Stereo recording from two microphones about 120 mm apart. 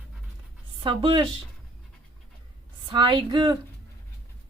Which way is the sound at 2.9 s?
40° right (ahead or behind).